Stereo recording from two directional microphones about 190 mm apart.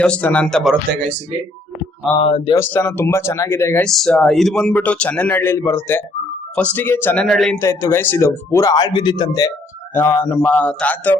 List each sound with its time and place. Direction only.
0.0 s speech: 5° left (ahead or behind)
2.1 s a man's voice: 5° left (ahead or behind)
3.8 s a man's voice: centre (ahead or behind)
7.6 s a man's voice: 15° left (ahead or behind)